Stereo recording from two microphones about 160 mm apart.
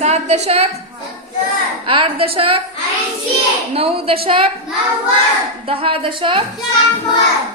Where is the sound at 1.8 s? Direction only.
35° right (ahead or behind).